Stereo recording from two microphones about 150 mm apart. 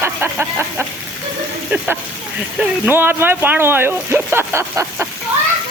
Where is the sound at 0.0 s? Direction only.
15° right (ahead or behind).